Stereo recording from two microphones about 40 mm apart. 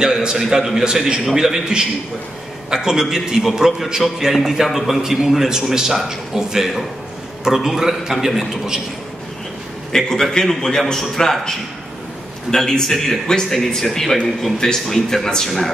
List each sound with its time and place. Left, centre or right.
0.0 s a man's voice: centre
0.4 s a man's voice: centre
9.9 s a man's voice: centre
12.4 s a man's voice: centre
12.9 s speech: centre
13.3 s a man's voice: centre